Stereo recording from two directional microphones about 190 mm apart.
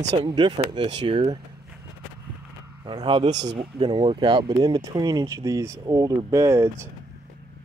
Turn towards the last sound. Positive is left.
turn(degrees=-15)  # may be behind; listen again after turning